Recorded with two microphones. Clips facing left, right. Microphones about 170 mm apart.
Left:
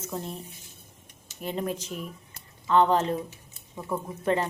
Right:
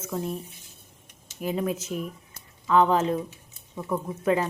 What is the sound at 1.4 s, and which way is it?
A woman's voice, 5° right (ahead or behind).